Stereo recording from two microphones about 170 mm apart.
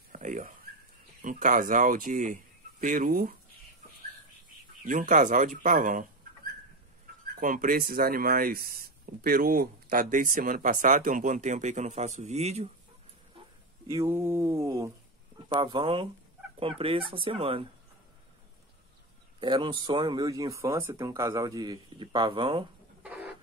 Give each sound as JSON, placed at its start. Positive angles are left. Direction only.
{"t": 0.1, "sound": "a sound", "side_deg": -50}
{"t": 1.2, "sound": "speech", "side_deg": -50}
{"t": 4.8, "sound": "speech", "side_deg": -50}
{"t": 7.3, "sound": "speech", "side_deg": -50}
{"t": 13.8, "sound": "mantra", "side_deg": -15}
{"t": 15.5, "sound": "speech", "side_deg": -25}
{"t": 19.4, "sound": "speech", "side_deg": -30}
{"t": 23.0, "sound": "a sound", "side_deg": -10}